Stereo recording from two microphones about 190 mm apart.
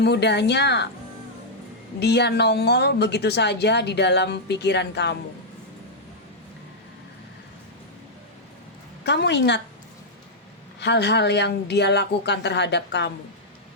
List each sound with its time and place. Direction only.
0.0 s a woman's voice: 60° left (ahead or behind)
2.0 s a woman's voice: 60° left (ahead or behind)
9.0 s a woman's voice: 65° left (ahead or behind)
10.8 s a woman's voice: 60° left (ahead or behind)